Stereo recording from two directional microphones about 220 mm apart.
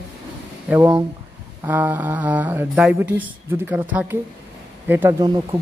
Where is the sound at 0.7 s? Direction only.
15° right (ahead or behind).